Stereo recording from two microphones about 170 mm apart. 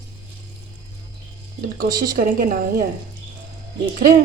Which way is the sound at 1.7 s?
60° right (ahead or behind).